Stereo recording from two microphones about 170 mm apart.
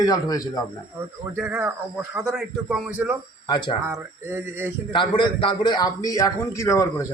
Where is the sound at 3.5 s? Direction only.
25° left (ahead or behind).